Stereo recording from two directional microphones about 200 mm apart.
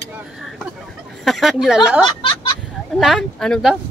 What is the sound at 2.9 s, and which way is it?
Speech, centre (ahead or behind).